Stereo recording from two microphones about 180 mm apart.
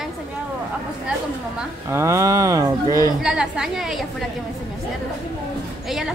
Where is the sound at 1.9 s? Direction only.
15° right (ahead or behind).